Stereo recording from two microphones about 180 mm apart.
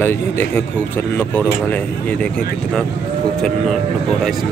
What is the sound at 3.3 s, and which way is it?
Speech, centre (ahead or behind).